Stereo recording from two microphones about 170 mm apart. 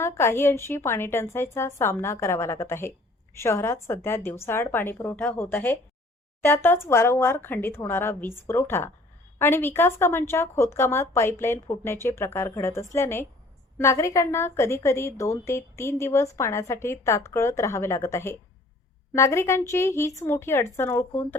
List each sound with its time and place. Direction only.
0.0 s a woman's voice: 15° left (ahead or behind)